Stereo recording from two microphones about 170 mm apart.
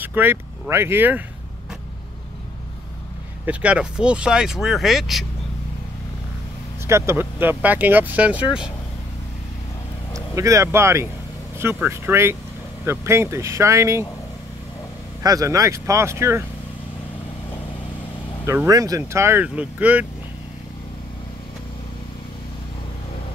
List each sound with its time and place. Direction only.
0.0 s speech: 10° right (ahead or behind)
3.4 s speech: 5° right (ahead or behind)
6.9 s speech: 15° right (ahead or behind)
10.1 s speech: 20° right (ahead or behind)
15.2 s speech: 20° right (ahead or behind)
18.4 s speech: 15° right (ahead or behind)